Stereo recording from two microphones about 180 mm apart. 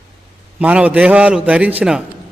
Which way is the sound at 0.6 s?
5° right (ahead or behind).